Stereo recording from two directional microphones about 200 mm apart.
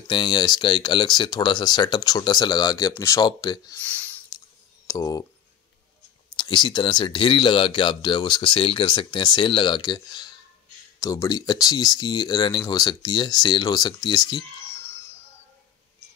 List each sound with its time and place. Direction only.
0.1 s speech: 25° left (ahead or behind)
3.8 s a sound: 10° left (ahead or behind)
4.8 s speech: 15° left (ahead or behind)
6.3 s speech: 20° left (ahead or behind)